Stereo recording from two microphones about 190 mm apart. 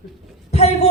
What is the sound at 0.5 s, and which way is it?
Speech, 35° left (ahead or behind).